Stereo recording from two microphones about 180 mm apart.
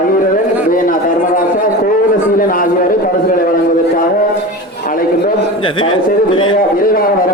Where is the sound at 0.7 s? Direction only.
50° left (ahead or behind).